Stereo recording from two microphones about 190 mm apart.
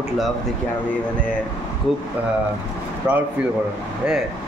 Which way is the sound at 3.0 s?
5° right (ahead or behind).